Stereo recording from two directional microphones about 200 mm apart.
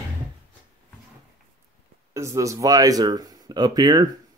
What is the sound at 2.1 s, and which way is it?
Speech, 15° right (ahead or behind).